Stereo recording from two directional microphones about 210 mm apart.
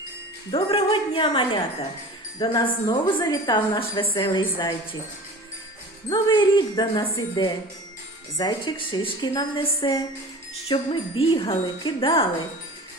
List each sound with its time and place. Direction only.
0.5 s a woman's voice: 25° left (ahead or behind)
6.1 s a woman's voice: 20° left (ahead or behind)